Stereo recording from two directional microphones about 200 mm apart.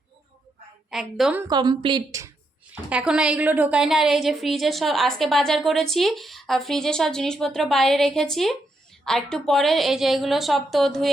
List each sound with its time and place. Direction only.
0.9 s a woman's voice: centre (ahead or behind)
1.5 s a woman's voice: 20° right (ahead or behind)
2.9 s a woman's voice: 5° right (ahead or behind)